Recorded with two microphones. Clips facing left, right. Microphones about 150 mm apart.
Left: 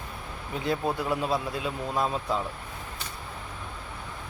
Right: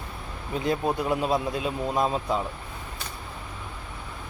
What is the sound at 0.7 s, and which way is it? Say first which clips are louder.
Speech: right 2 dB; 20° right (ahead or behind).